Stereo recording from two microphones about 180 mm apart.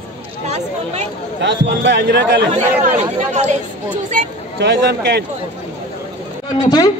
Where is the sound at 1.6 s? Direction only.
80° right.